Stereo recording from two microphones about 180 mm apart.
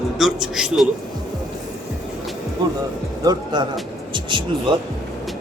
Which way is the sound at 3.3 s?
25° right (ahead or behind).